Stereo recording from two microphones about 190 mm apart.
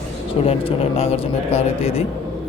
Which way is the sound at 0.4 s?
30° left (ahead or behind).